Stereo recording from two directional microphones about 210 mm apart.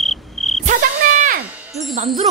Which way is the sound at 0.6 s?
35° right (ahead or behind).